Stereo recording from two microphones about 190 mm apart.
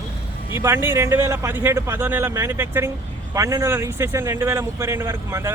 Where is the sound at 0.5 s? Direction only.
15° right (ahead or behind).